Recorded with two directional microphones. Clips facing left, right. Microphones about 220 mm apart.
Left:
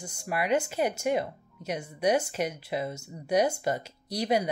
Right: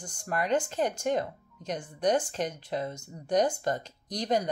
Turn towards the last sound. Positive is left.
turn(degrees=10)  # may be behind; listen again after turning